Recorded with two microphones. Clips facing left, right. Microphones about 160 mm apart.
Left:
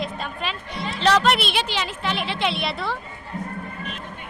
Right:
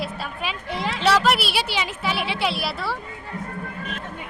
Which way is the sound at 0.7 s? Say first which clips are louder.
Right 3 dB; 90° right.